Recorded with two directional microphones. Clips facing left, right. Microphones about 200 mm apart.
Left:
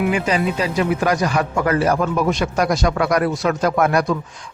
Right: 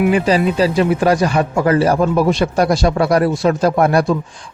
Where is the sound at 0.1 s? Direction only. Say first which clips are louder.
Right 5 dB; 35° right (ahead or behind).